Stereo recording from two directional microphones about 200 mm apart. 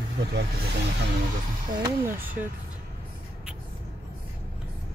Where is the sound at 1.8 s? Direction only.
20° right (ahead or behind).